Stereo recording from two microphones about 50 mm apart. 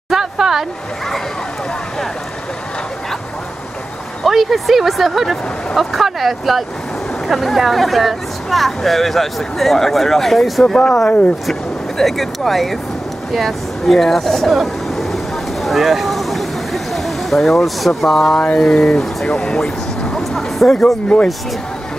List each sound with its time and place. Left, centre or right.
0.1 s a sound: centre
4.2 s speech: centre
10.8 s speech: centre
12.0 s speech: centre
15.6 s a sound: centre
18.6 s speech: centre
20.3 s speech: centre
20.7 s speech: left